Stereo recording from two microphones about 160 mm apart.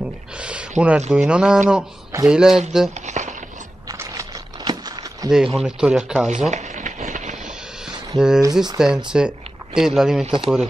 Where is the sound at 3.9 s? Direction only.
20° right (ahead or behind).